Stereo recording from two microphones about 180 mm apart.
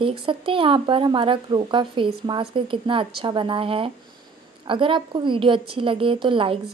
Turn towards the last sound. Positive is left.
turn(degrees=-30)  # may be behind; listen again after turning